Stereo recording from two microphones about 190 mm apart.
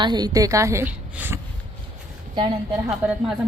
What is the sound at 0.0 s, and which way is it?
A woman's voice, 20° right (ahead or behind).